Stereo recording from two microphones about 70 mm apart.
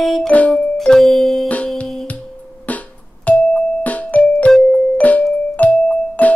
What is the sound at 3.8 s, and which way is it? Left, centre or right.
Keyboard, left.